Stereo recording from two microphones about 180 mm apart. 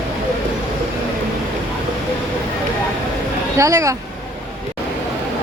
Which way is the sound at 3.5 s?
15° right (ahead or behind).